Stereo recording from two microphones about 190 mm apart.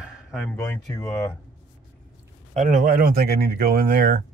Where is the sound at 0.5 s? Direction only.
10° left (ahead or behind).